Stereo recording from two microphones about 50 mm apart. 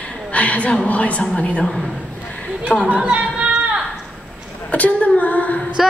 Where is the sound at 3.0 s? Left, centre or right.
Right.